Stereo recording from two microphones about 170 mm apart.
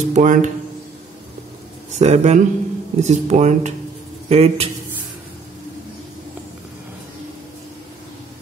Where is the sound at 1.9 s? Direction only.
40° right (ahead or behind).